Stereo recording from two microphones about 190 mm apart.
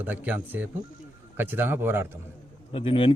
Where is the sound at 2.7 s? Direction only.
30° left (ahead or behind).